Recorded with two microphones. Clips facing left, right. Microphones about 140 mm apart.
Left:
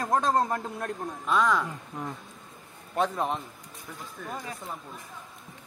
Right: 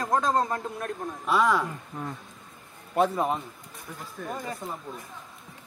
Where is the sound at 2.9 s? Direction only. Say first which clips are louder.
Right 3 dB; 5° right (ahead or behind).